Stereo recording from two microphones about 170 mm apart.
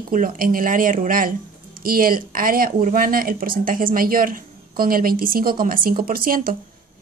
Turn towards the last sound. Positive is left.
turn(degrees=-55)  # may be behind; listen again after turning